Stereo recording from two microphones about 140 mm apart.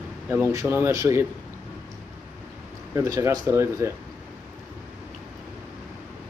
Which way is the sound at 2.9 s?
20° right (ahead or behind).